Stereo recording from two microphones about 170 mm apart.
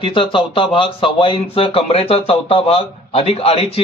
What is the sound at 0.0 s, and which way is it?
A man's voice, 30° left (ahead or behind).